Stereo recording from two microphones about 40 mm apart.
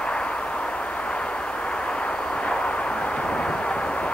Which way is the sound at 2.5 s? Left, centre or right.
Left.